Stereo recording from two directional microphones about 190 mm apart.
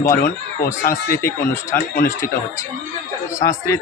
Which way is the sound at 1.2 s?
15° left (ahead or behind).